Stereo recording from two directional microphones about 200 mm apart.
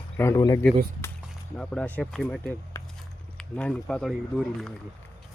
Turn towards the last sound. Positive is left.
turn(degrees=0)  # may be behind; listen again after turning